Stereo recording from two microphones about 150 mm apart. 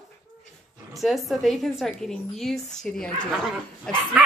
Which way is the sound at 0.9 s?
Centre (ahead or behind).